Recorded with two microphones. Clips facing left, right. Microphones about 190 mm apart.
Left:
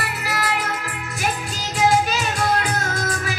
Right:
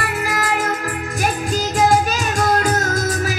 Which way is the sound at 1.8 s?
45° right (ahead or behind).